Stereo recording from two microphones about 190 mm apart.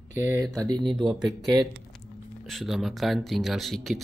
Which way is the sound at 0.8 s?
25° right (ahead or behind).